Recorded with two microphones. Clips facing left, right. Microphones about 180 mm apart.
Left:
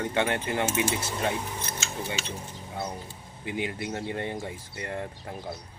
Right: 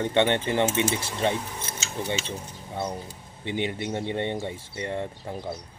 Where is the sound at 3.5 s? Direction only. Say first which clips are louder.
Right 3 dB; 25° right (ahead or behind).